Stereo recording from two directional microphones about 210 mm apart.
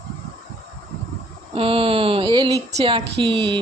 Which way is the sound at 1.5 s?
25° right (ahead or behind).